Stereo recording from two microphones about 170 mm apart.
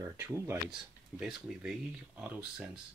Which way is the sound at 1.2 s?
5° right (ahead or behind).